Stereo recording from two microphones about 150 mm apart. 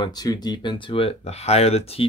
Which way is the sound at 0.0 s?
25° left (ahead or behind).